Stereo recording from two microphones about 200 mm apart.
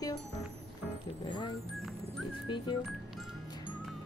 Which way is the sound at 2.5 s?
25° left (ahead or behind).